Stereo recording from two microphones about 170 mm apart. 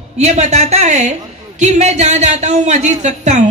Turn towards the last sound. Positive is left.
turn(degrees=-45)  # may be behind; listen again after turning